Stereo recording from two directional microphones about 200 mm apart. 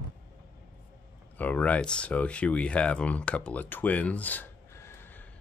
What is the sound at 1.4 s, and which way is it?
Speech, 10° left (ahead or behind).